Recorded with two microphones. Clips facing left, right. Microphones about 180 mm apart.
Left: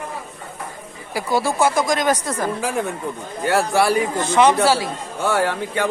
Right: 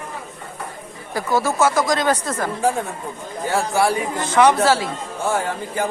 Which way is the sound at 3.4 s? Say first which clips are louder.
Left 1 dB; 70° left (ahead or behind).